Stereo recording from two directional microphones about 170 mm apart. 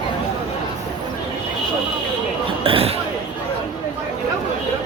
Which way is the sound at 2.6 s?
35° right (ahead or behind).